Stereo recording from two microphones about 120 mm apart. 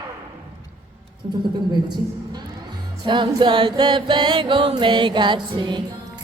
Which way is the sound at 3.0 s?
40° right (ahead or behind).